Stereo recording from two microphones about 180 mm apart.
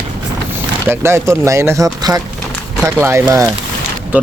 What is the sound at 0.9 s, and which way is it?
Speech, 15° right (ahead or behind).